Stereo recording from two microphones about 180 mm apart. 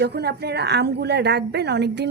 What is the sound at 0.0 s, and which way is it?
A woman's voice, 65° right (ahead or behind).